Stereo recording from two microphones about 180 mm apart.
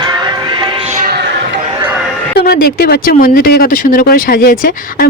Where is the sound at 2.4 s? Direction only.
55° left (ahead or behind).